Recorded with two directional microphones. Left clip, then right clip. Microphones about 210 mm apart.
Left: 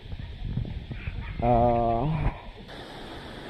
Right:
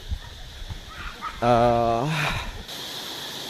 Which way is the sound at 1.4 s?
55° right (ahead or behind).